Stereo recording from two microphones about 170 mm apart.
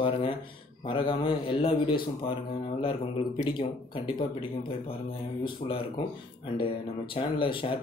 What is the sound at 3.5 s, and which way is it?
Speech, 30° left (ahead or behind).